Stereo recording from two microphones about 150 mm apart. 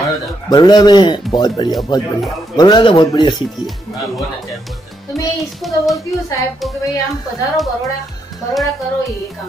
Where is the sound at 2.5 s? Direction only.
30° left (ahead or behind).